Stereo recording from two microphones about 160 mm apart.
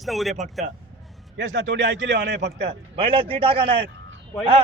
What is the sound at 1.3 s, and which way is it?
A man's voice, 90° right.